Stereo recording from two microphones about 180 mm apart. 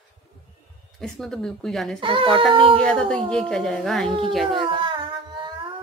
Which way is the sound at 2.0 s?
30° right (ahead or behind).